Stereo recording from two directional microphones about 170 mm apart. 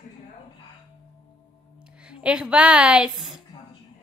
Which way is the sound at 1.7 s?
5° right (ahead or behind).